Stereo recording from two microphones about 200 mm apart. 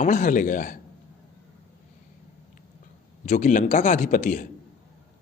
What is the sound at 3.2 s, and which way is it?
A man's voice, 40° left (ahead or behind).